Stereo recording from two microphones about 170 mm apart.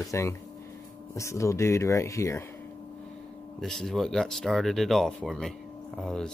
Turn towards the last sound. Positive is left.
turn(degrees=5)  # may be behind; listen again after turning